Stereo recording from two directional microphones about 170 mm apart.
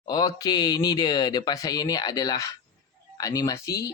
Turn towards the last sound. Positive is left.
turn(degrees=20)  # may be behind; listen again after turning